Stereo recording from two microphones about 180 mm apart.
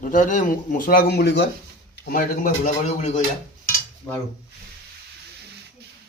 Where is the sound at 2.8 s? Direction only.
40° left (ahead or behind).